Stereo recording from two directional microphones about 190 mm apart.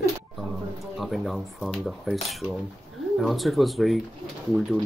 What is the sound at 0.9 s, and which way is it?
Speech, centre (ahead or behind).